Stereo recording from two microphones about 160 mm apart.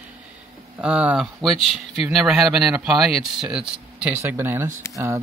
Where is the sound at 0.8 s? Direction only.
10° right (ahead or behind).